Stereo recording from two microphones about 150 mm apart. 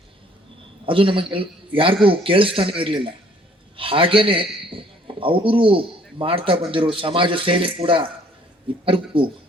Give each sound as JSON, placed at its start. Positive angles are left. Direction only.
{"t": 0.9, "sound": "a man's voice", "side_deg": -35}